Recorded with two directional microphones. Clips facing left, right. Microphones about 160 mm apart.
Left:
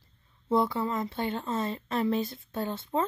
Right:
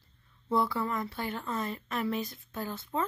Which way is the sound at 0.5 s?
20° left (ahead or behind).